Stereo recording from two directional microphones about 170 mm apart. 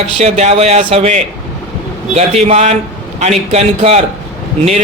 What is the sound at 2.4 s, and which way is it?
Speech, 40° right (ahead or behind).